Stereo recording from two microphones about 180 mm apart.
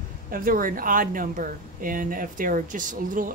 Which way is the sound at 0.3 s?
50° right (ahead or behind).